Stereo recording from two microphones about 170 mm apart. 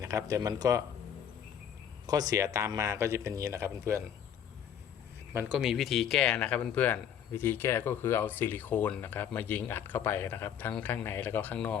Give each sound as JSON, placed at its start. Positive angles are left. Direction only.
{"t": 0.0, "sound": "speech", "side_deg": -20}
{"t": 2.0, "sound": "speech", "side_deg": -20}
{"t": 5.3, "sound": "speech", "side_deg": -10}